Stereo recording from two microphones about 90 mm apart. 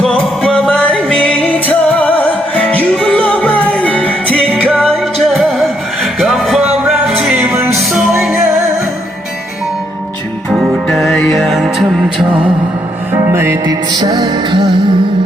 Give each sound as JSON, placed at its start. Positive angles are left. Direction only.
{"t": 0.0, "sound": "music", "side_deg": 10}
{"t": 10.8, "sound": "music", "side_deg": 5}
{"t": 13.2, "sound": "music", "side_deg": -30}
{"t": 13.7, "sound": "music", "side_deg": -50}